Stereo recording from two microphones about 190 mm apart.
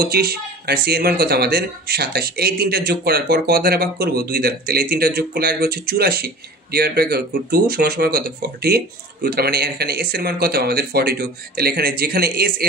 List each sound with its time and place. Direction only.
0.0 s speech: 55° right (ahead or behind)